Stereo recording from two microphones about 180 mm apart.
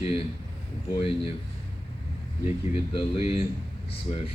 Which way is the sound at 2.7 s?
30° left (ahead or behind).